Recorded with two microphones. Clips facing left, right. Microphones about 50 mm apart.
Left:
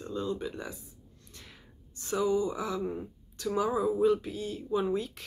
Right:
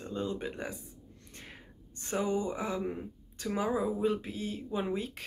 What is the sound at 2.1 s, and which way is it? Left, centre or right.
Speech, right.